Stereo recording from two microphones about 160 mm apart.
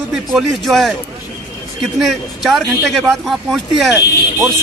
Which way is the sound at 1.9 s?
Centre (ahead or behind).